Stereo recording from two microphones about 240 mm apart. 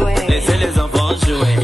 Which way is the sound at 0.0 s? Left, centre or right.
Centre.